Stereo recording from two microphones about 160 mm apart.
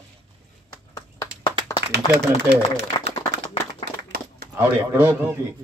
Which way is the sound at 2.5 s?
90° right.